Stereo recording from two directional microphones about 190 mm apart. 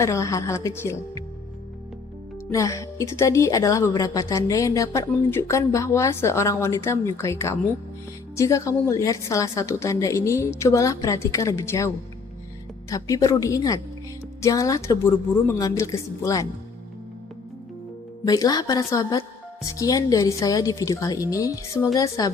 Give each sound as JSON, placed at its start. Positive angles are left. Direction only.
{"t": 0.0, "sound": "a woman's voice", "side_deg": 15}
{"t": 2.5, "sound": "a woman's voice", "side_deg": 15}
{"t": 12.9, "sound": "a woman's voice", "side_deg": 20}
{"t": 18.3, "sound": "a woman's voice", "side_deg": 20}